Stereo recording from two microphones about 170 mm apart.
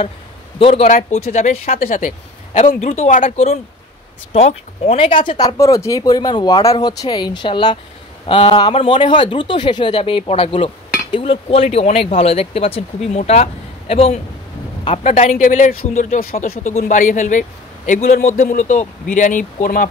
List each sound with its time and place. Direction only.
0.6 s speech: 35° left (ahead or behind)
0.8 s a man's voice: 45° left (ahead or behind)
16.2 s a man's voice: 55° left (ahead or behind)